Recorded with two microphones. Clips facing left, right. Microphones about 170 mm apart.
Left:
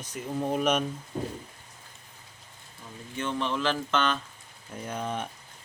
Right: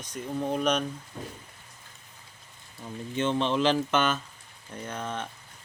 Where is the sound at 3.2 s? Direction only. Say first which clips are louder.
Right 4 dB; 25° right (ahead or behind).